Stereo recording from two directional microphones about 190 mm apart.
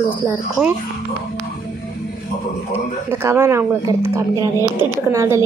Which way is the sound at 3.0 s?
15° right (ahead or behind).